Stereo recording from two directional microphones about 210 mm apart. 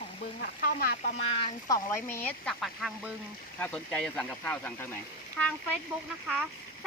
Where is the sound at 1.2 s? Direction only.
25° left (ahead or behind).